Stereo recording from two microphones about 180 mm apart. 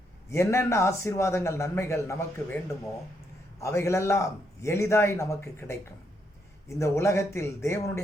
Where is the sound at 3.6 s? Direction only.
15° left (ahead or behind).